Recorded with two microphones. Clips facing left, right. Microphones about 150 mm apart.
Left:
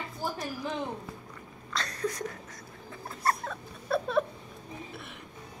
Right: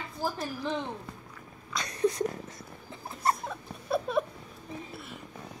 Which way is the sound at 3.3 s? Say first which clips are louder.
Right 1 dB; 15° right (ahead or behind).